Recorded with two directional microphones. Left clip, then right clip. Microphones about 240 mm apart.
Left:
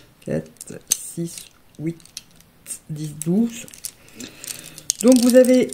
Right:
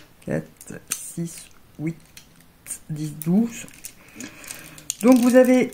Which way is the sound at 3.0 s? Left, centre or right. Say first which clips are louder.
Left 2 dB; left.